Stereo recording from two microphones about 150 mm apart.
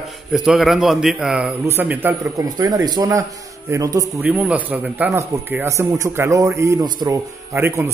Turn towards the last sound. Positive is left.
turn(degrees=-15)  # may be behind; listen again after turning